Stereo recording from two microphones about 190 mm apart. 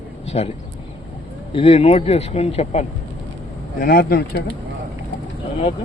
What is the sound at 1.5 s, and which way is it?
Speech, 30° left (ahead or behind).